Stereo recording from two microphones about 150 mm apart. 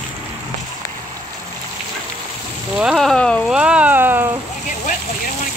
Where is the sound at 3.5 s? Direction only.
5° right (ahead or behind).